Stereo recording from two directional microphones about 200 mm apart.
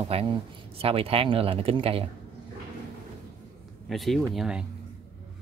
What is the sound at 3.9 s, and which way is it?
Speech, centre (ahead or behind).